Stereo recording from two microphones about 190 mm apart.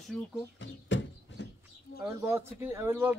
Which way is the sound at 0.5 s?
70° left (ahead or behind).